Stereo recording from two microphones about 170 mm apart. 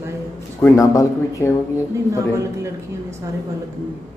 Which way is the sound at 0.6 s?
20° left (ahead or behind).